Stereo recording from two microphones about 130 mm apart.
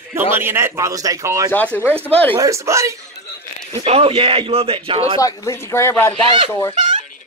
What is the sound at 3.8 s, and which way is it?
Speech, 50° right (ahead or behind).